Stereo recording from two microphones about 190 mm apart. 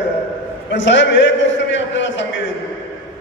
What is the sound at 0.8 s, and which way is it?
A man's voice, 70° left (ahead or behind).